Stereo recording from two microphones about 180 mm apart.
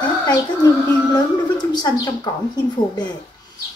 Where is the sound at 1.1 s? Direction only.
25° left (ahead or behind).